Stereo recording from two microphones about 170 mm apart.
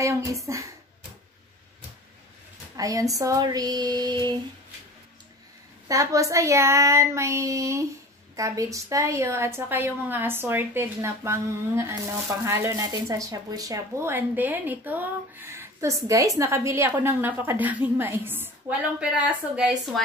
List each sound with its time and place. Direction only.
0.0 s speech: 20° right (ahead or behind)
2.7 s speech: 20° right (ahead or behind)
5.9 s speech: 20° right (ahead or behind); by 20.0 s 5° right (ahead or behind)